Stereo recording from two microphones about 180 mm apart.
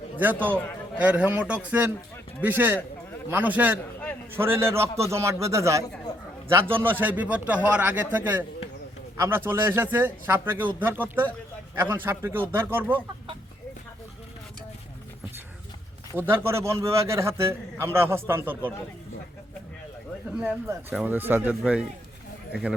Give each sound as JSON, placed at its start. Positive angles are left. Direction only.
{"t": 0.2, "sound": "a man's voice", "side_deg": -10}
{"t": 16.1, "sound": "a man's voice", "side_deg": -10}
{"t": 20.4, "sound": "a man's voice", "side_deg": -10}